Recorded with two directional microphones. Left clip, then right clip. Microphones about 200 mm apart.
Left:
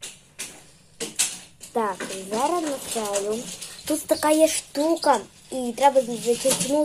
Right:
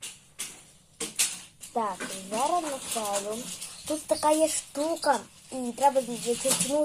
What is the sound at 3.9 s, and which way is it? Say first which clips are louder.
Speech: left 4 dB; 15° left (ahead or behind).